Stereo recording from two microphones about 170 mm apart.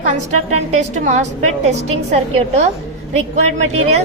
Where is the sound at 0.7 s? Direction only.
45° right (ahead or behind).